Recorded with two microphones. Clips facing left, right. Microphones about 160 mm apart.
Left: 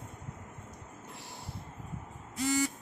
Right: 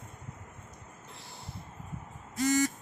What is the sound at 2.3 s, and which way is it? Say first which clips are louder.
Buzzer: right 3 dB; 45° right (ahead or behind).